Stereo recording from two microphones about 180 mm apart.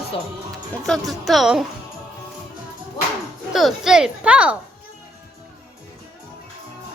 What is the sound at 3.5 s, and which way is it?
A woman's voice, centre (ahead or behind).